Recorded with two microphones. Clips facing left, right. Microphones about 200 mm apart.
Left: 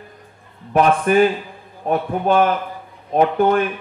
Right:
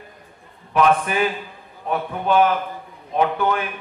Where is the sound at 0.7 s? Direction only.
45° left (ahead or behind).